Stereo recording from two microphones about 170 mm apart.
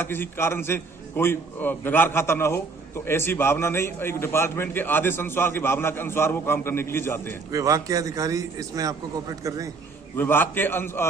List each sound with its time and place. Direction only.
0.0 s a man's voice: 10° left (ahead or behind)
7.5 s a man's voice: 20° right (ahead or behind)
10.2 s a man's voice: 10° left (ahead or behind)